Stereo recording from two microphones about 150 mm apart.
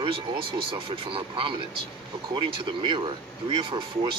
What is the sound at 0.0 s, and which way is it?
Speech, 35° right (ahead or behind).